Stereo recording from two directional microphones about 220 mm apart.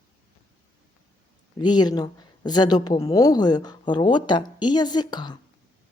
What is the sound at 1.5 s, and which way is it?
Speech, 20° left (ahead or behind).